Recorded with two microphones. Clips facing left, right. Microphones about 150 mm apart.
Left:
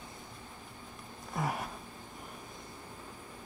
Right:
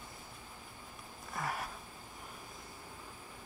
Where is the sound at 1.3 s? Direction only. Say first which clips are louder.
Left 4 dB; centre (ahead or behind).